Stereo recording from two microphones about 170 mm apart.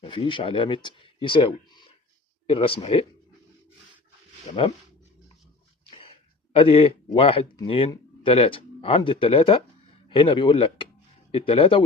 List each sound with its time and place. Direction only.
0.0 s speech: 30° left (ahead or behind)
5.9 s a sound: 30° left (ahead or behind)
8.2 s speech: 30° left (ahead or behind)